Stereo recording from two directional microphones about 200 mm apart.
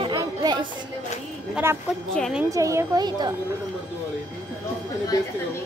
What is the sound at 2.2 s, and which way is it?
Speech, centre (ahead or behind).